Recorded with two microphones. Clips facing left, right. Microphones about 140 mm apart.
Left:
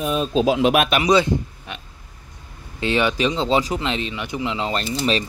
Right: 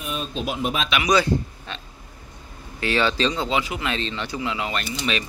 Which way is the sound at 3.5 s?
35° left (ahead or behind).